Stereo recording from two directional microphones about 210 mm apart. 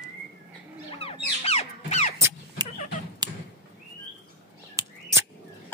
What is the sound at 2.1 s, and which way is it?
Vehicle, 10° right (ahead or behind).